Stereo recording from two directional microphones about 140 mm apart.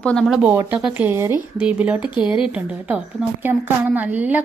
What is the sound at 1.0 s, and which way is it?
A woman's voice, 15° right (ahead or behind).